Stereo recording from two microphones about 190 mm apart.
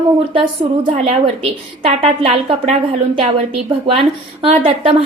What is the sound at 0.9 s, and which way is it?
A woman's voice, 30° right (ahead or behind).